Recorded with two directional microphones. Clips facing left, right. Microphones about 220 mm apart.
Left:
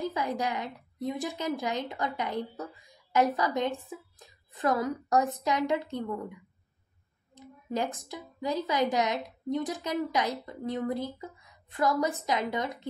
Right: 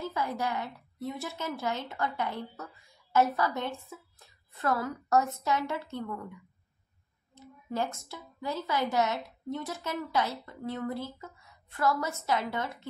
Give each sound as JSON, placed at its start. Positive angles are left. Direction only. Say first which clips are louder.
{"t": 0.0, "sound": "a woman's voice", "louder": "left 2 dB", "side_deg": 15}
{"t": 7.3, "sound": "a sound", "louder": "left 1 dB", "side_deg": 15}
{"t": 8.0, "sound": "a woman's voice", "louder": "left 4 dB", "side_deg": 15}